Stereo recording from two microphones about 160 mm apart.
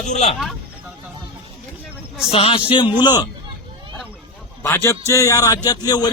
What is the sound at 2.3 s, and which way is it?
Speech, 35° left (ahead or behind).